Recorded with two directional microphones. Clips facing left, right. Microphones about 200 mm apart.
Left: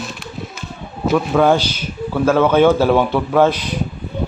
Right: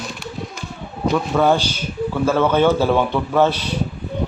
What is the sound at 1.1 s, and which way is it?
A man's voice, 10° left (ahead or behind).